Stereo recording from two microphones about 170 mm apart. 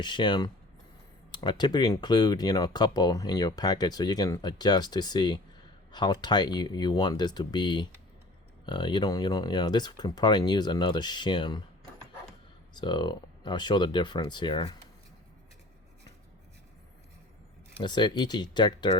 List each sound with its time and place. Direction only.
0.0 s speech: 25° left (ahead or behind)
12.7 s speech: 25° left (ahead or behind)
17.8 s speech: 25° left (ahead or behind)